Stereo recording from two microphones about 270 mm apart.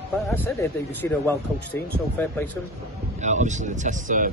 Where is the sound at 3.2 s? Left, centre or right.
Right.